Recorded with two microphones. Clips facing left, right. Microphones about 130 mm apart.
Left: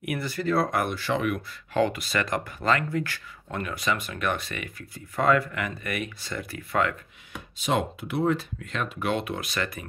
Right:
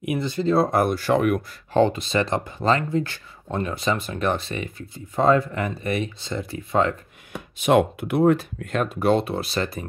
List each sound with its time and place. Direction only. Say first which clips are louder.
0.0 s speech: right 5 dB; 20° right (ahead or behind); by 1.4 s 45° right (ahead or behind)
1.7 s speech: right 5 dB; 30° right (ahead or behind)
7.5 s speech: right 8 dB; 60° right (ahead or behind); by 9.8 s 30° right (ahead or behind)